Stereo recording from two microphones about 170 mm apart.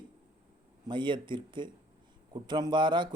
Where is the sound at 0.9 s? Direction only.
30° right (ahead or behind).